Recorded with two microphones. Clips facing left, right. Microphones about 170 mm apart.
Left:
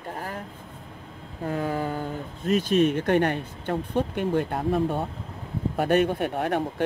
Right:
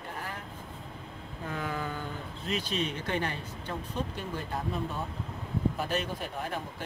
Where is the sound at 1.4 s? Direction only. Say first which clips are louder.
Left 8 dB; 35° left (ahead or behind).